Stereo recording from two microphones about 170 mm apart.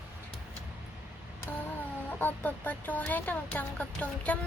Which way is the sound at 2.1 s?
10° left (ahead or behind).